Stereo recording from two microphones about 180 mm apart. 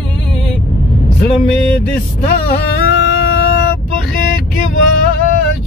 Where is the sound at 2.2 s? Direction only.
65° left (ahead or behind).